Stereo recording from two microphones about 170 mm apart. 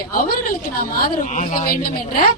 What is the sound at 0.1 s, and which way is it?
A man's voice, 55° left (ahead or behind).